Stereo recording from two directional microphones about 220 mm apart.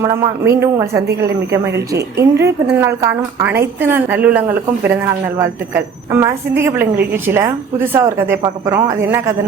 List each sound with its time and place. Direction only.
0.0 s a woman's voice: 15° right (ahead or behind)